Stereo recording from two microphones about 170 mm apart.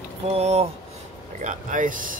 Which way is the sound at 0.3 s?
40° right (ahead or behind).